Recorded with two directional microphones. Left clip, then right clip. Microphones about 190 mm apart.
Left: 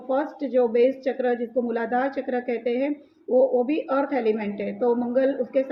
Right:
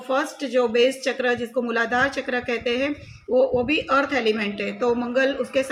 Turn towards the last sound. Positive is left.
turn(degrees=-10)  # may be behind; listen again after turning